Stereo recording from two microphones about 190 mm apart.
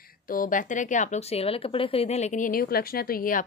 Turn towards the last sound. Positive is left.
turn(degrees=50)  # may be behind; listen again after turning